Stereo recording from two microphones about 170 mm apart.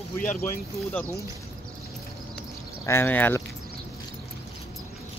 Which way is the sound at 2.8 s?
15° left (ahead or behind).